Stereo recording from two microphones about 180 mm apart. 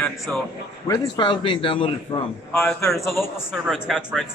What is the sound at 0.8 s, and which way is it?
A man's voice, 25° left (ahead or behind).